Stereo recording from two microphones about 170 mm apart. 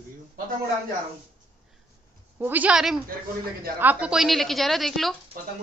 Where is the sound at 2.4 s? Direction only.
10° right (ahead or behind).